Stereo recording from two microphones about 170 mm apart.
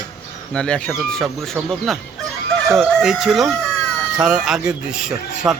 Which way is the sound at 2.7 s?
5° right (ahead or behind).